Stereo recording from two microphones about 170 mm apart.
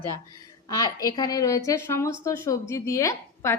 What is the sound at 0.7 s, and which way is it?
A woman's voice, 20° left (ahead or behind).